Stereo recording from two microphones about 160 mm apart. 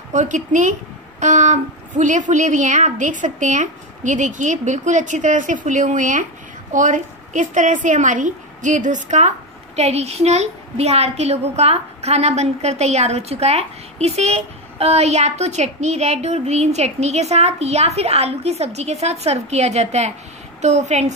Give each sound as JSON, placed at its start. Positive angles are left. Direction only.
{"t": 0.1, "sound": "a woman's voice", "side_deg": -50}